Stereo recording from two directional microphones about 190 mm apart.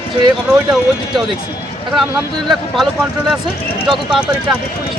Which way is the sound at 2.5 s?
Centre (ahead or behind).